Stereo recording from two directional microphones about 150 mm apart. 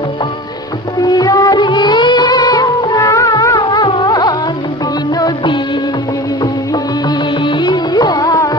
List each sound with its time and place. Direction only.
0.9 s music: 25° left (ahead or behind)
7.4 s music: 30° left (ahead or behind)